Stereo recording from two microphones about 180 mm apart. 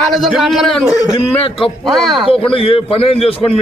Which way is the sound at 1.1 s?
30° left (ahead or behind).